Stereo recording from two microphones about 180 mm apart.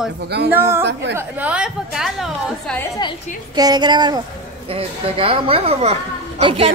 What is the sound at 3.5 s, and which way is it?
A woman's voice, 20° right (ahead or behind).